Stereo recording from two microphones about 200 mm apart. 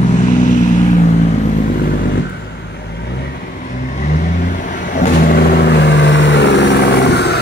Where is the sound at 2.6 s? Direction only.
55° left (ahead or behind).